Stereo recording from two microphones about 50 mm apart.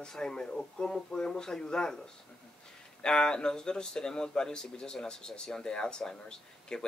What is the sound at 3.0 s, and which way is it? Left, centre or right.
Speech, centre.